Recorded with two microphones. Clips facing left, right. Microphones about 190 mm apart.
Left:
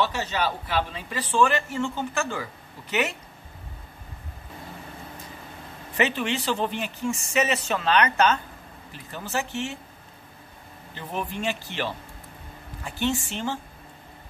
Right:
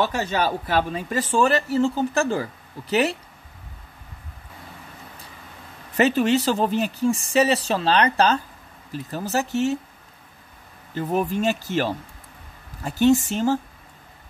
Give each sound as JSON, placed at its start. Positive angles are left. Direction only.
{"t": 0.0, "sound": "speech", "side_deg": -45}
{"t": 5.9, "sound": "speech", "side_deg": -40}
{"t": 11.0, "sound": "speech", "side_deg": -45}